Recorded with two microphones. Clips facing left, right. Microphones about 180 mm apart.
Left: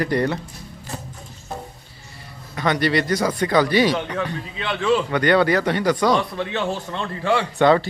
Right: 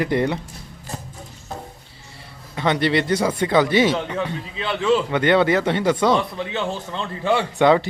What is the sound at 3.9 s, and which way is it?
Speech, 5° right (ahead or behind).